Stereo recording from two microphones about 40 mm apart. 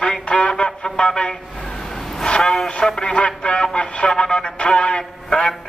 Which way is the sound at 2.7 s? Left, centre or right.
Centre.